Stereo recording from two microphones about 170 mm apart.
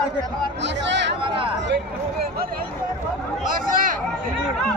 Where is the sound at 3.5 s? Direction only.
55° right (ahead or behind).